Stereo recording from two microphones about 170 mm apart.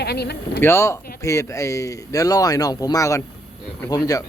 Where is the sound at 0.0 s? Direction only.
75° left (ahead or behind).